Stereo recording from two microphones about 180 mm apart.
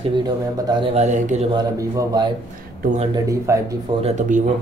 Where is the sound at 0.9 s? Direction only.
40° right (ahead or behind).